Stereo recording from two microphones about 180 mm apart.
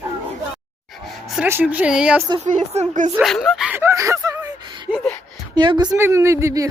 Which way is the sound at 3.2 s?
Centre (ahead or behind).